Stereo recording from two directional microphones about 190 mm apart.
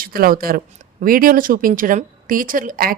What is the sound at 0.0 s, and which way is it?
Speech, 50° right (ahead or behind).